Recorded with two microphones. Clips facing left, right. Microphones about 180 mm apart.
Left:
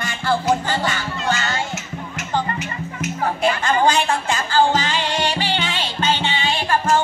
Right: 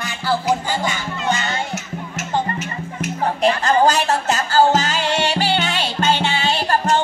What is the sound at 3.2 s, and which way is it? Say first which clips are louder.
Music: right 2 dB; 35° right (ahead or behind).